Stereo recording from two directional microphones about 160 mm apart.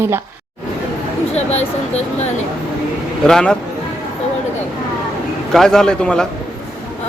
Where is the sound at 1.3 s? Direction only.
40° left (ahead or behind).